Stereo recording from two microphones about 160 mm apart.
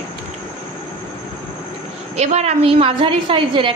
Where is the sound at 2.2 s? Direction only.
45° right (ahead or behind).